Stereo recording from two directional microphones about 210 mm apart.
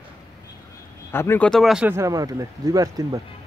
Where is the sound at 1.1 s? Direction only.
10° left (ahead or behind).